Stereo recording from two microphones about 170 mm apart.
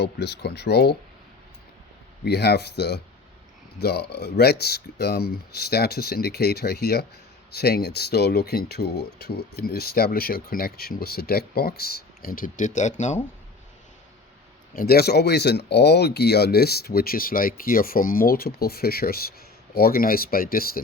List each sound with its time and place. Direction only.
0.0 s speech: 75° left (ahead or behind)
2.2 s speech: 70° left (ahead or behind); by 13.1 s 45° left (ahead or behind)
14.7 s speech: 60° left (ahead or behind)